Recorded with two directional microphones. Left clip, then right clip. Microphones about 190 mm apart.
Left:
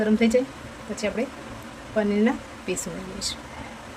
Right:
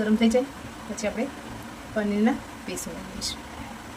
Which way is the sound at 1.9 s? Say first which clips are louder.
Left 3 dB; 25° left (ahead or behind).